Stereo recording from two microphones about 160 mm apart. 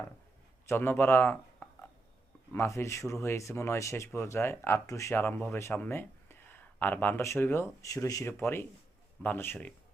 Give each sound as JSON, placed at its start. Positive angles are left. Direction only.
{"t": 0.7, "sound": "speech", "side_deg": 15}